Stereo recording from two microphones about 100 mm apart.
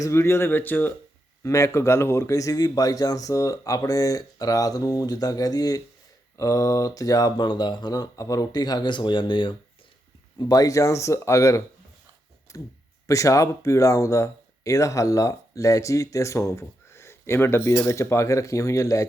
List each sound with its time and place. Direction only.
0.0 s speech: 25° left (ahead or behind)
1.5 s speech: 30° left (ahead or behind); by 9.6 s 55° left (ahead or behind)
10.3 s speech: 40° left (ahead or behind)